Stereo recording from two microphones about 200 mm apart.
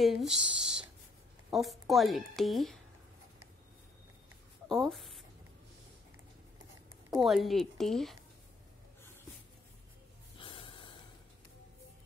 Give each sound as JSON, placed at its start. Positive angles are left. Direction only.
{"t": 0.0, "sound": "a woman's voice", "side_deg": 0}
{"t": 0.6, "sound": "whispering", "side_deg": -5}
{"t": 1.5, "sound": "a woman's voice", "side_deg": 0}
{"t": 4.6, "sound": "speech", "side_deg": 0}
{"t": 7.2, "sound": "a woman's voice", "side_deg": 0}
{"t": 10.3, "sound": "snort", "side_deg": 25}